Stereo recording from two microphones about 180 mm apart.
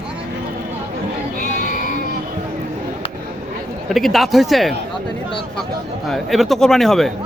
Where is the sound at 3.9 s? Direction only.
Centre (ahead or behind).